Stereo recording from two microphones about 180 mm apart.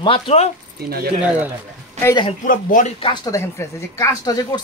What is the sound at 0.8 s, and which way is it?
Speech, 60° right (ahead or behind).